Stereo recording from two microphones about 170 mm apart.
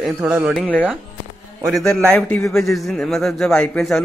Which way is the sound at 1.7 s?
Centre (ahead or behind).